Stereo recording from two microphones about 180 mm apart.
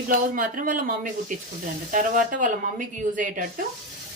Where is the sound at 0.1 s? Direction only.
50° right (ahead or behind).